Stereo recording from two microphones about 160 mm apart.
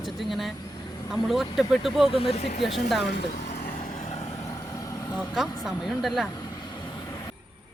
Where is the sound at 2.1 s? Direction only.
35° left (ahead or behind).